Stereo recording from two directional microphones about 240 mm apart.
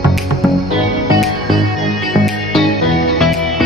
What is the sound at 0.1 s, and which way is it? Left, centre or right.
Music, centre.